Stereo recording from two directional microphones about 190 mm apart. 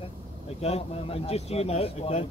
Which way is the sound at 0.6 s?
30° left (ahead or behind).